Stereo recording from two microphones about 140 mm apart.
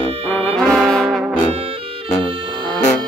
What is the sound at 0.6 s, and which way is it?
Trombone, 5° left (ahead or behind).